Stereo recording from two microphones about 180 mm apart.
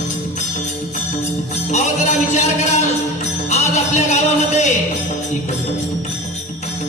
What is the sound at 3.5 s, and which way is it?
Music, 35° left (ahead or behind).